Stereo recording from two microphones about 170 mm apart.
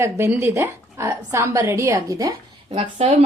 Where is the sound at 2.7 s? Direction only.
35° right (ahead or behind).